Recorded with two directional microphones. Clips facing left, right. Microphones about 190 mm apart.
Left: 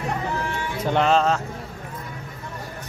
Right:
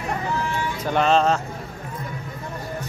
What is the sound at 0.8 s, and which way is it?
Music, 20° left (ahead or behind).